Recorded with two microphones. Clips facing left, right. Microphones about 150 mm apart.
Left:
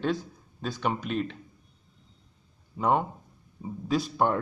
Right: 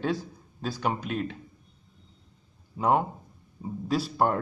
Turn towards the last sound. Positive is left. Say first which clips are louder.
# even
turn(degrees=-5)  # may be behind; listen again after turning